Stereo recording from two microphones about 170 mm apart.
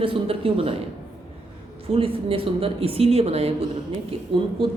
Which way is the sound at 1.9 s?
35° right (ahead or behind).